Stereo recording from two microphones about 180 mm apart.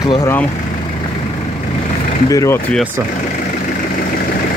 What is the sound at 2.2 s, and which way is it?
Speech, 15° left (ahead or behind).